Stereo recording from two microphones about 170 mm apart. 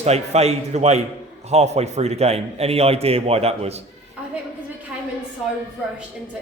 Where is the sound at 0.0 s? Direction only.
40° right (ahead or behind).